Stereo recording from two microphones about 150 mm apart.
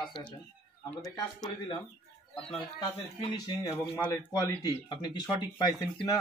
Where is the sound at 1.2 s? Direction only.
25° left (ahead or behind).